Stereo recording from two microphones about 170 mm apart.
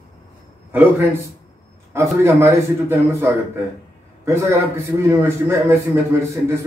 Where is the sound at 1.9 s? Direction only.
15° right (ahead or behind).